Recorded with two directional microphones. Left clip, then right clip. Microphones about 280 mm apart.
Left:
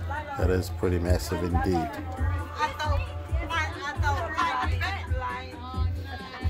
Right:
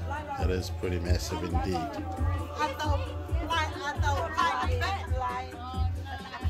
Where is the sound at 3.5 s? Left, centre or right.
Right.